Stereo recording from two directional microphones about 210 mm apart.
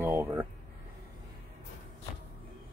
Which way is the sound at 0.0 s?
10° right (ahead or behind).